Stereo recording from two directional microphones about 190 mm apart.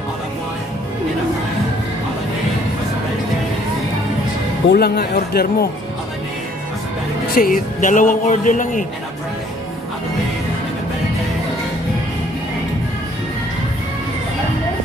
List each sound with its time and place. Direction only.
4.6 s speech: 55° left (ahead or behind)
7.3 s a man's voice: 50° left (ahead or behind)